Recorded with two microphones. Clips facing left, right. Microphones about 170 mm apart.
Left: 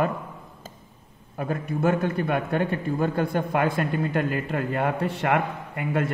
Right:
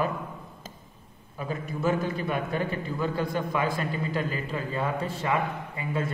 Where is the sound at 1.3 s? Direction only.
60° left (ahead or behind).